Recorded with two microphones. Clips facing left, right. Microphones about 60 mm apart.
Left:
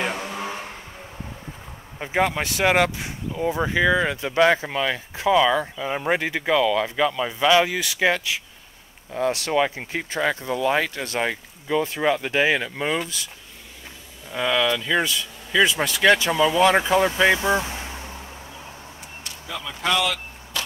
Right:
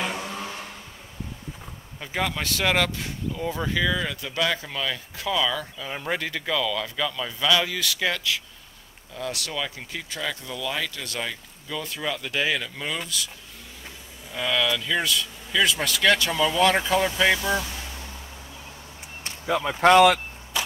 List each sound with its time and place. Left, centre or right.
0.0 s vehicle: left
2.0 s speech: left
14.3 s speech: centre
19.2 s speech: right
20.5 s a sound: centre